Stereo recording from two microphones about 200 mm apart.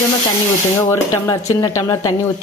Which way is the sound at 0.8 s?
15° left (ahead or behind).